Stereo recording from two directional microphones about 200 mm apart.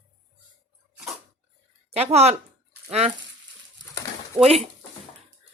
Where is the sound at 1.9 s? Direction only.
30° right (ahead or behind).